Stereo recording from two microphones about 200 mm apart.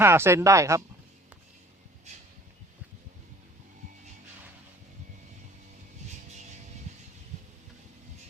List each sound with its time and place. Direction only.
0.0 s speech: 10° right (ahead or behind)
6.1 s vehicle: 35° right (ahead or behind)